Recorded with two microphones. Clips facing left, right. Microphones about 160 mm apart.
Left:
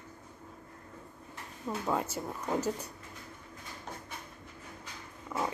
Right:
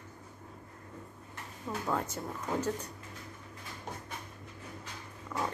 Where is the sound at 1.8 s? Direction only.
5° left (ahead or behind).